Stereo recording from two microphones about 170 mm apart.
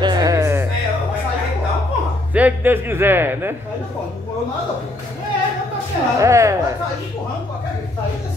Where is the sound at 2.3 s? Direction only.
10° right (ahead or behind).